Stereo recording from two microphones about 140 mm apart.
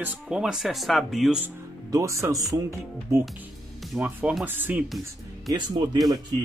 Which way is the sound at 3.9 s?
5° right (ahead or behind).